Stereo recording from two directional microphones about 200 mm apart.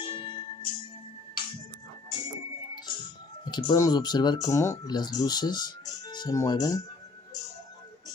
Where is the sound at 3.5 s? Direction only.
20° left (ahead or behind).